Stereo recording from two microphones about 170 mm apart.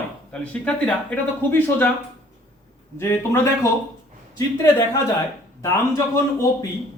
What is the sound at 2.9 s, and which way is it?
Speech, 15° left (ahead or behind).